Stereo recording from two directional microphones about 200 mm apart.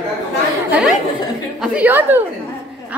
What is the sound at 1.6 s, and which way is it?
Speech, 10° right (ahead or behind).